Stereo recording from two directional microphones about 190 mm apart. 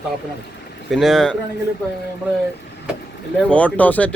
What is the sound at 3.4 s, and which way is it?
Speech, 5° left (ahead or behind).